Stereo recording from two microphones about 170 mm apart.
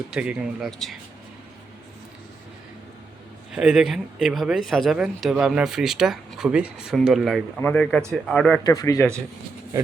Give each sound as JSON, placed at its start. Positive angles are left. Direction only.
{"t": 0.1, "sound": "speech", "side_deg": -5}
{"t": 3.5, "sound": "speech", "side_deg": -5}
{"t": 8.6, "sound": "speech", "side_deg": 20}